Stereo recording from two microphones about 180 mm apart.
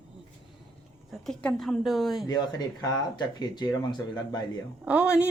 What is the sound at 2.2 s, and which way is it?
Speech, 20° left (ahead or behind).